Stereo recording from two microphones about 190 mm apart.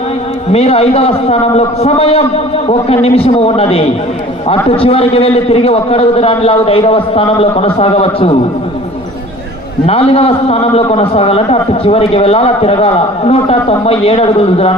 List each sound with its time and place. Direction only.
0.5 s a man's voice: 35° left (ahead or behind)
9.8 s a man's voice: 30° left (ahead or behind)